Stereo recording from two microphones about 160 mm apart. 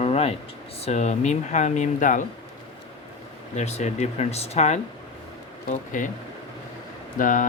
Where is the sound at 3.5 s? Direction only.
45° left (ahead or behind).